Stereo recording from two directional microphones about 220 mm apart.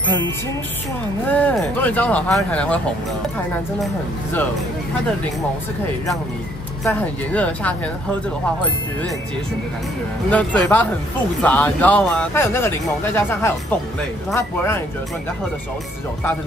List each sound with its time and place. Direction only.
1.2 s speech: 5° left (ahead or behind)
3.8 s speech: 10° left (ahead or behind)
6.8 s speech: 10° left (ahead or behind)
10.3 s speech: 5° left (ahead or behind)